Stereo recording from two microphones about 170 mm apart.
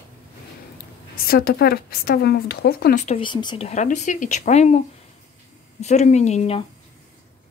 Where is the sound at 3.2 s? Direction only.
25° left (ahead or behind).